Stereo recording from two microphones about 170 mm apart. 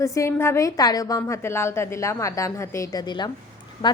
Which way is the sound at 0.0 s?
15° left (ahead or behind).